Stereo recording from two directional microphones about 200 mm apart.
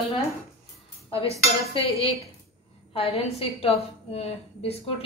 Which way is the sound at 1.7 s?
30° left (ahead or behind).